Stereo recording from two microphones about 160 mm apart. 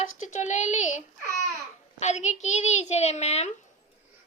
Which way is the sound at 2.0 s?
45° left (ahead or behind).